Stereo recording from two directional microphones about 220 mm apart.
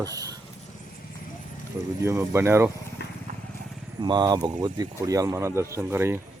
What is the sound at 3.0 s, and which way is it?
Vehicle, 50° left (ahead or behind).